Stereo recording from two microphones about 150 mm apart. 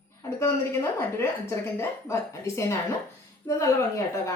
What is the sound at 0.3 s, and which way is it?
A woman's voice, 20° left (ahead or behind).